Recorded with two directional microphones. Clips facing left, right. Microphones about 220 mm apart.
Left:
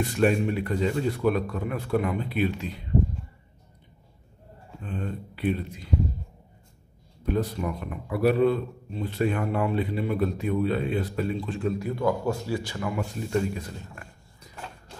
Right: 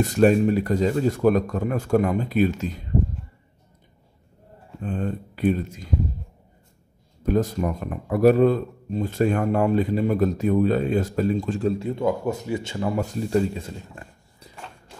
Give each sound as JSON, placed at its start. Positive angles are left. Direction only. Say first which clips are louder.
{"t": 0.0, "sound": "speech", "louder": "right 6 dB", "side_deg": -40}
{"t": 4.8, "sound": "speech", "louder": "right 6 dB", "side_deg": -45}
{"t": 7.2, "sound": "speech", "louder": "right 5 dB", "side_deg": -45}
{"t": 11.8, "sound": "speech", "louder": "right 2 dB", "side_deg": -20}
{"t": 12.9, "sound": "speech", "louder": "right 5 dB", "side_deg": -40}
{"t": 13.5, "sound": "a sound", "louder": "right 1 dB", "side_deg": -25}